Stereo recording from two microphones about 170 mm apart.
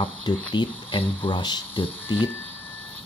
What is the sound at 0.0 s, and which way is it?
Speech, 25° left (ahead or behind).